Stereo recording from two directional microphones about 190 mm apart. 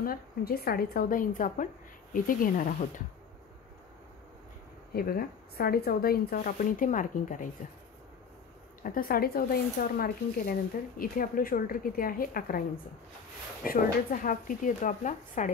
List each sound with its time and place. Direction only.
0.0 s speech: 50° left (ahead or behind)
4.9 s speech: 50° left (ahead or behind)
8.8 s speech: 50° left (ahead or behind)
13.7 s speech: 45° left (ahead or behind)